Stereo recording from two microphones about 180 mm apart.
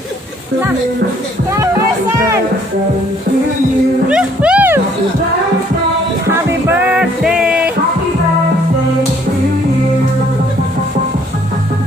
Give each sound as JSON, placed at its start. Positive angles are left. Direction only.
{"t": 4.1, "sound": "music", "side_deg": -5}
{"t": 6.3, "sound": "music", "side_deg": -10}